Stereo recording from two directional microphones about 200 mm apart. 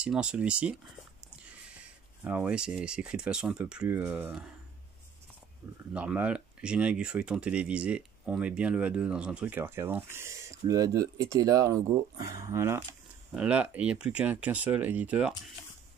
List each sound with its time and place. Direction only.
0.0 s speech: 5° right (ahead or behind)
2.2 s speech: 10° right (ahead or behind)
5.9 s speech: 5° right (ahead or behind)